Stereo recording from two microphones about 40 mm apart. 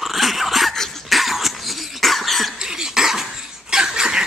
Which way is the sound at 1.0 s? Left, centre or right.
Centre.